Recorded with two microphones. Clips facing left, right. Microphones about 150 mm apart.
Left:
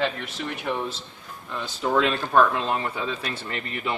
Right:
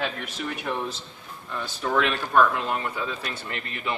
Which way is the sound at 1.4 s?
20° left (ahead or behind).